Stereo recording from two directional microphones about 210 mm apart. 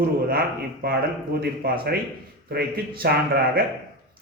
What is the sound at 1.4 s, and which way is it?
A man's voice, 45° right (ahead or behind).